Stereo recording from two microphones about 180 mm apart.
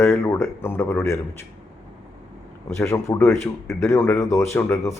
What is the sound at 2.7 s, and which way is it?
Speech, 15° left (ahead or behind).